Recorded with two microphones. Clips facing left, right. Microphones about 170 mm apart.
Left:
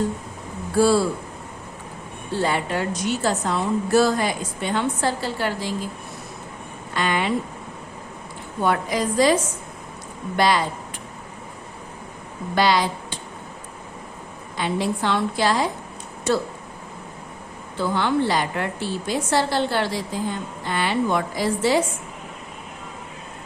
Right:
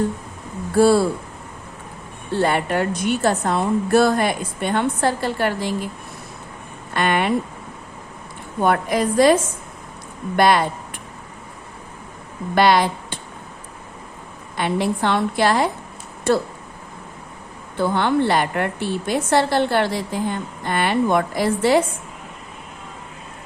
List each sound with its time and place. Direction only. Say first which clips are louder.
0.8 s a woman's voice: right 3 dB; 55° right (ahead or behind)
2.4 s a woman's voice: right 4 dB; 55° right (ahead or behind)
6.9 s a woman's voice: right 3 dB; 55° right (ahead or behind)
8.6 s a woman's voice: right 3 dB; 55° right (ahead or behind)
12.5 s speech: right 4 dB; 55° right (ahead or behind)
14.5 s a woman's voice: right 3 dB; 60° right (ahead or behind)
17.7 s a woman's voice: right 3 dB; 55° right (ahead or behind)